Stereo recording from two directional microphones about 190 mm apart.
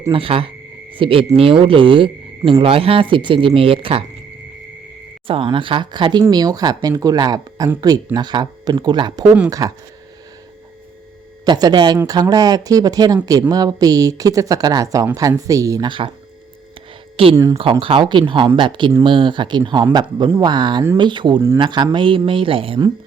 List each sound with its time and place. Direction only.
0.1 s speech: 30° right (ahead or behind)
5.3 s speech: 25° right (ahead or behind)
11.4 s speech: 20° right (ahead or behind)
17.3 s speech: 15° right (ahead or behind)
17.6 s speech: 30° right (ahead or behind)